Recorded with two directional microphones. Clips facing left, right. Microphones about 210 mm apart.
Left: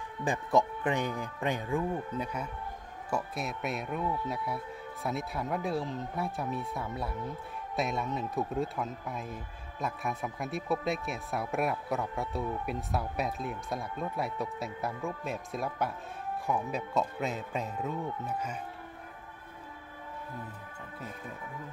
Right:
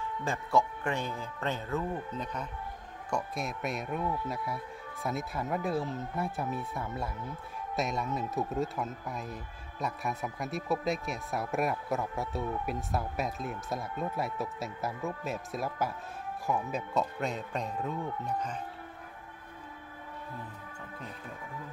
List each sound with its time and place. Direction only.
0.2 s speech: 15° left (ahead or behind)